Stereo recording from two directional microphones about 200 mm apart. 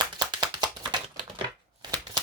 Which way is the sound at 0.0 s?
20° right (ahead or behind).